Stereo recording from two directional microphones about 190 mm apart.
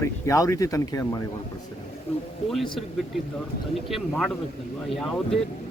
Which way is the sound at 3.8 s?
Centre (ahead or behind).